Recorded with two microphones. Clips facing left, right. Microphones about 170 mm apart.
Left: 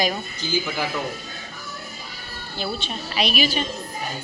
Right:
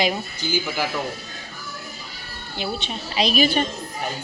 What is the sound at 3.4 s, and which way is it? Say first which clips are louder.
Speech: right 4 dB; 55° right (ahead or behind).